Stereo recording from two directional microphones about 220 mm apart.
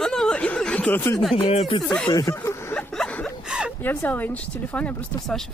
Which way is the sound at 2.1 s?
15° left (ahead or behind).